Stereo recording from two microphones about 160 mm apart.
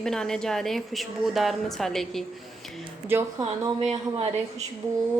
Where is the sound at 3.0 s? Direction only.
20° right (ahead or behind).